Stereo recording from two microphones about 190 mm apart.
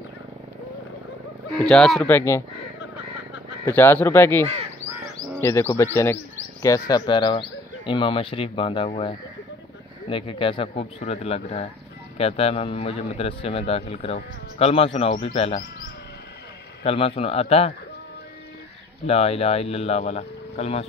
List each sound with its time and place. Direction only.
1.6 s speech: 5° left (ahead or behind)
3.6 s a man's voice: 10° left (ahead or behind); by 15.6 s 30° left (ahead or behind)
16.8 s a man's voice: 30° left (ahead or behind)
19.0 s a man's voice: 30° left (ahead or behind)